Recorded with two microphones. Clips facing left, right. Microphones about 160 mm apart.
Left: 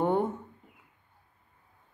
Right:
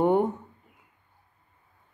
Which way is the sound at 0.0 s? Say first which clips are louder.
Right 4 dB; 15° right (ahead or behind).